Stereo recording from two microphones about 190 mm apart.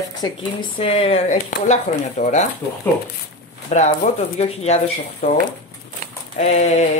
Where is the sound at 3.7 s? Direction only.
35° left (ahead or behind).